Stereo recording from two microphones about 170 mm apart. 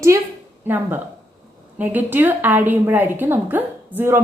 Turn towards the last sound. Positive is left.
turn(degrees=-10)  # may be behind; listen again after turning